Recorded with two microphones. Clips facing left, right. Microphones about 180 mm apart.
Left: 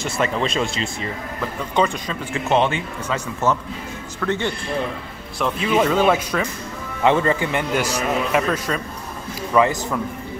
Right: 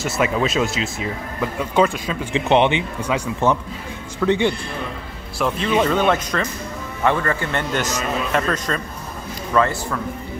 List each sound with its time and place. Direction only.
0.0 s speech: 5° right (ahead or behind)
2.3 s speech: 20° right (ahead or behind)
5.4 s speech: 5° left (ahead or behind)
7.0 s a man's voice: 20° left (ahead or behind)